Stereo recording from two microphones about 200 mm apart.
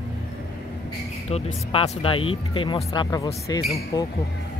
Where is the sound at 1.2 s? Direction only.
30° left (ahead or behind).